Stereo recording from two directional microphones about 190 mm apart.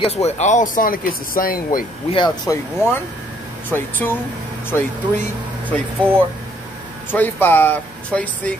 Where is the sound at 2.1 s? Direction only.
20° left (ahead or behind).